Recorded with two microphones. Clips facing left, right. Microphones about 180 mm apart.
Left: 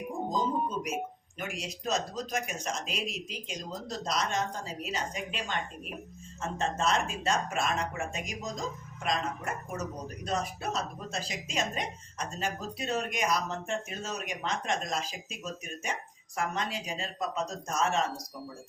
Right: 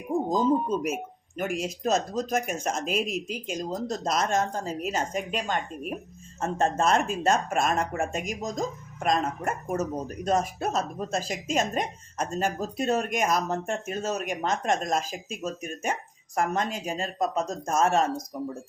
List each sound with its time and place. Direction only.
1.4 s speech: 45° right (ahead or behind)